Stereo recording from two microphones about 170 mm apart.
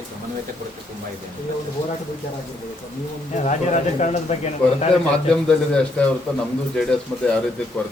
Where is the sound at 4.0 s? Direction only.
40° left (ahead or behind).